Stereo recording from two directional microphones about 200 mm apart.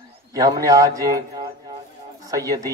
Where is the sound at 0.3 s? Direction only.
15° right (ahead or behind).